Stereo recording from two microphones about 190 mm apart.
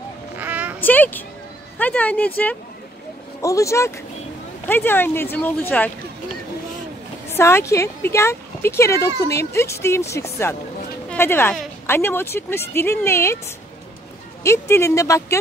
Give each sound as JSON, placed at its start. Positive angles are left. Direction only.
{"t": 0.4, "sound": "a sound", "side_deg": -10}
{"t": 0.7, "sound": "speech", "side_deg": 10}
{"t": 7.2, "sound": "a woman's voice", "side_deg": 15}
{"t": 14.4, "sound": "speech", "side_deg": 15}